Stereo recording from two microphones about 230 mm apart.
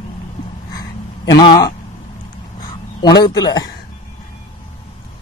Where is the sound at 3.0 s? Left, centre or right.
Centre.